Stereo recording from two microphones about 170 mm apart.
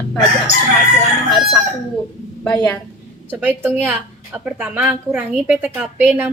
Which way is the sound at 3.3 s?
10° right (ahead or behind).